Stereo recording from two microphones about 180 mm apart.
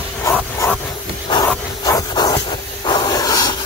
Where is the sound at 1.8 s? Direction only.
20° left (ahead or behind).